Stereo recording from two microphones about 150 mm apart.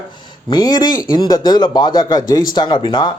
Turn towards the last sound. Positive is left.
turn(degrees=30)  # may be behind; listen again after turning